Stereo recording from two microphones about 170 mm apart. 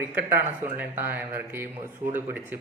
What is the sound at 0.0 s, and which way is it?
Speech, 15° right (ahead or behind).